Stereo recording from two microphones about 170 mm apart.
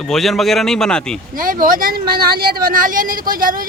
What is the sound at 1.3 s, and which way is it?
Speech, 55° right (ahead or behind).